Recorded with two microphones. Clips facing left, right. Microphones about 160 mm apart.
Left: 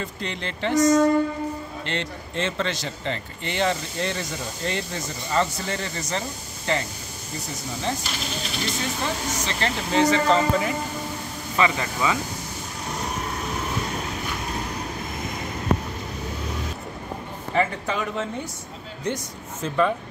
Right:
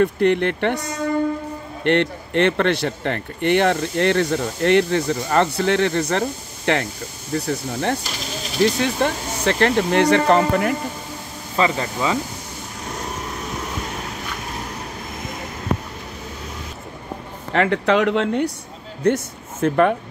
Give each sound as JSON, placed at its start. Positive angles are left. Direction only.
{"t": 0.0, "sound": "speech", "side_deg": -60}
{"t": 11.5, "sound": "speech", "side_deg": -30}
{"t": 17.5, "sound": "speech", "side_deg": -70}
{"t": 19.0, "sound": "speech", "side_deg": -60}